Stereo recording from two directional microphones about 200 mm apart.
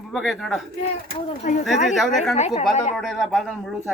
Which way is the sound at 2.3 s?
35° left (ahead or behind).